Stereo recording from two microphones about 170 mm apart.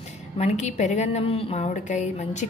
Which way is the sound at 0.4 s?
40° left (ahead or behind).